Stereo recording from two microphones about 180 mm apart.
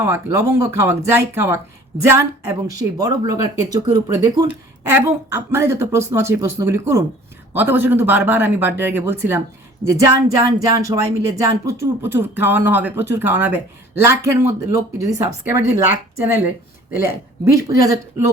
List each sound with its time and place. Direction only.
0.0 s a woman's voice: 15° right (ahead or behind)
16.9 s speech: 55° left (ahead or behind)
17.5 s speech: 15° right (ahead or behind)